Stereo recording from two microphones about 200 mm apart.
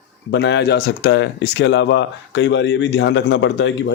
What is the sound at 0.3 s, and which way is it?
Speech, 60° left (ahead or behind).